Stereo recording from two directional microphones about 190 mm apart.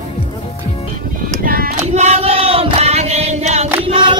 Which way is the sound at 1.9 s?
35° right (ahead or behind).